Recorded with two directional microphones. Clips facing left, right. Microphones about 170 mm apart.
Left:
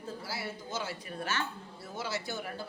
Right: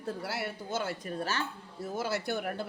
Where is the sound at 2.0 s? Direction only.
55° right (ahead or behind).